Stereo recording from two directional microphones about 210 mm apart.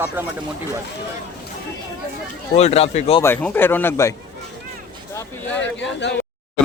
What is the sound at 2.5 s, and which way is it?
Speech, 30° left (ahead or behind).